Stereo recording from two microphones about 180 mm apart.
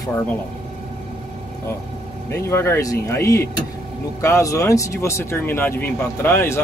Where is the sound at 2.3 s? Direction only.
15° left (ahead or behind).